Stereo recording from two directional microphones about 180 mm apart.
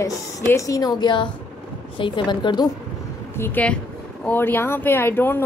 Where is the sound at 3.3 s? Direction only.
10° left (ahead or behind).